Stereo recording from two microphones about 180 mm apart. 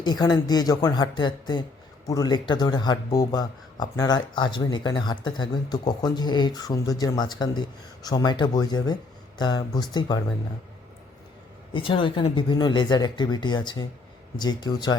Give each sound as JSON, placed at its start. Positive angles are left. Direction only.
{"t": 0.0, "sound": "speech", "side_deg": 20}
{"t": 11.7, "sound": "speech", "side_deg": 30}